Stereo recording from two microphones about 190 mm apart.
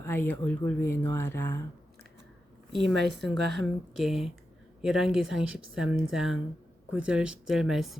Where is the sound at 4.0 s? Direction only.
Centre (ahead or behind).